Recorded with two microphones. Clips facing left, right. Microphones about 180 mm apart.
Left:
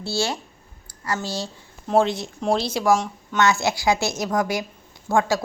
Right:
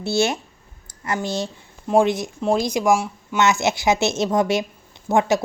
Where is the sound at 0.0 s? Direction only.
20° right (ahead or behind).